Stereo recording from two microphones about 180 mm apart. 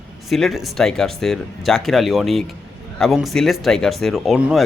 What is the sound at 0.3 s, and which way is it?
Speech, centre (ahead or behind).